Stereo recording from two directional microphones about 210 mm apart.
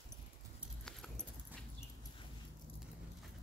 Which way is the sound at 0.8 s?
5° left (ahead or behind).